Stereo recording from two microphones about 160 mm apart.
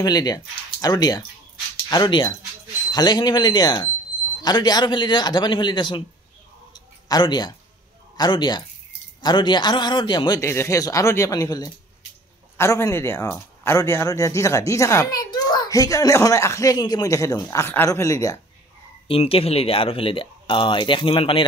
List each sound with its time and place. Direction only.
0.0 s speech: 25° left (ahead or behind)
6.7 s a sound: 25° left (ahead or behind)
8.2 s speech: 25° left (ahead or behind)
19.0 s speech: 35° left (ahead or behind)